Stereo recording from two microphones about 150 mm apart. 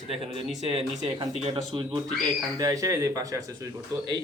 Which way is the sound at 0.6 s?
40° right (ahead or behind).